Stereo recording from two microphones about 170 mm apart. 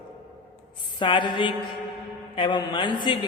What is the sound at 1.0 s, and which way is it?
A man's voice, 30° left (ahead or behind).